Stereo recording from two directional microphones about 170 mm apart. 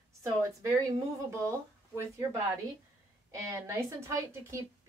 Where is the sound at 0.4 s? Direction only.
20° right (ahead or behind).